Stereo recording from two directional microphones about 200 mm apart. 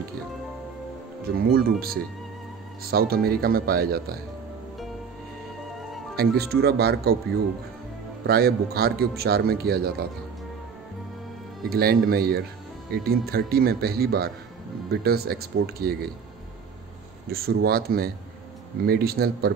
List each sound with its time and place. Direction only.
1.3 s a man's voice: 45° right (ahead or behind)
6.1 s a man's voice: 50° right (ahead or behind)
8.3 s a man's voice: 50° right (ahead or behind)
11.7 s a man's voice: 50° right (ahead or behind)
17.3 s a man's voice: 50° right (ahead or behind)